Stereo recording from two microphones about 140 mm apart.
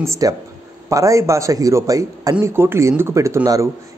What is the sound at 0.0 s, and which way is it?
Speech, 20° right (ahead or behind).